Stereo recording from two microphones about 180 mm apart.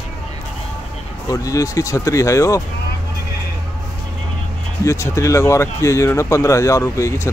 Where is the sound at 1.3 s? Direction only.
20° left (ahead or behind).